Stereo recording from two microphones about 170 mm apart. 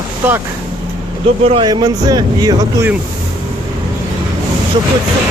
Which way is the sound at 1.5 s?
30° right (ahead or behind).